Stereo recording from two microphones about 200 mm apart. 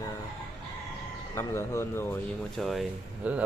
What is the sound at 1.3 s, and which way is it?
Speech, 15° left (ahead or behind).